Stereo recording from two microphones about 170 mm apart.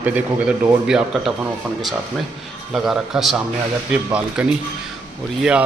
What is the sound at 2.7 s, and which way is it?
Speech, 5° right (ahead or behind).